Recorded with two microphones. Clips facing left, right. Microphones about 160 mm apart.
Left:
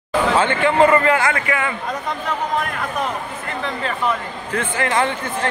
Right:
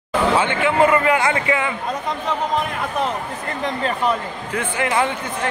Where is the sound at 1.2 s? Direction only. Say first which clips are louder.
Right 1 dB; 25° right (ahead or behind).